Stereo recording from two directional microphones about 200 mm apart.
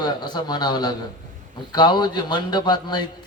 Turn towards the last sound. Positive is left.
turn(degrees=20)  # may be behind; listen again after turning